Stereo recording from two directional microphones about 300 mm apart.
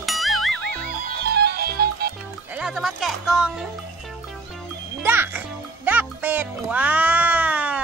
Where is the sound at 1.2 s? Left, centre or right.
Right.